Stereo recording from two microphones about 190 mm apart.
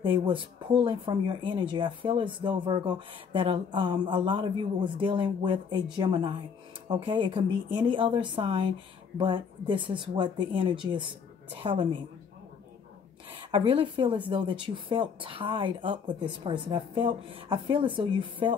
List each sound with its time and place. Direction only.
0.0 s speech: 25° right (ahead or behind)
13.4 s speech: 25° right (ahead or behind)